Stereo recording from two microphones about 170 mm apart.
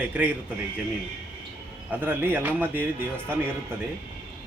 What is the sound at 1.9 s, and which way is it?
Speech, 10° right (ahead or behind).